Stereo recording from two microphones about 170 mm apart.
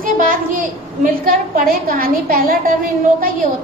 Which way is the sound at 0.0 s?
55° right (ahead or behind).